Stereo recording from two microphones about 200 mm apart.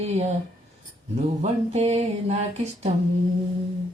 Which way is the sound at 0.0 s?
35° right (ahead or behind).